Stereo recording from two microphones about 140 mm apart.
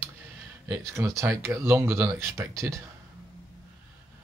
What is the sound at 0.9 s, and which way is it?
Speech, 20° right (ahead or behind).